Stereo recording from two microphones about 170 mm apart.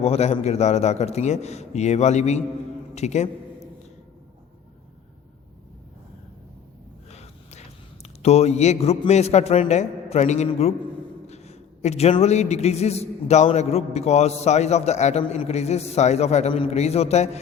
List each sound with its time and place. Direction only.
0.0 s a man's voice: 40° left (ahead or behind)
7.1 s a sound: 40° left (ahead or behind)
8.0 s a man's voice: 40° left (ahead or behind)